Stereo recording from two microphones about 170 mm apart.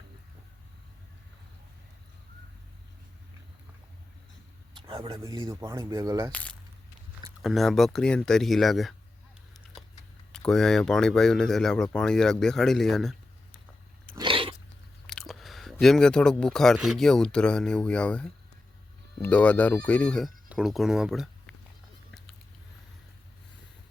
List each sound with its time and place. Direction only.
4.7 s a sound: 30° right (ahead or behind)
5.2 s speech: 20° right (ahead or behind)
6.3 s speech: 10° left (ahead or behind)
10.3 s speech: 5° left (ahead or behind)
14.2 s biting: 30° right (ahead or behind)
15.0 s a sound: centre (ahead or behind)
16.7 s speech: centre (ahead or behind)